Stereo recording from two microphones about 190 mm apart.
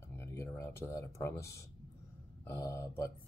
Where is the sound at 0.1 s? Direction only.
15° left (ahead or behind).